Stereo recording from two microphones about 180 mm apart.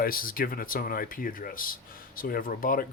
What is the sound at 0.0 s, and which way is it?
Speech, 55° left (ahead or behind).